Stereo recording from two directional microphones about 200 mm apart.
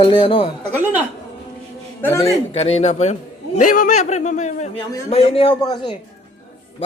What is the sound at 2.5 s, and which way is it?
A man's voice, 30° left (ahead or behind).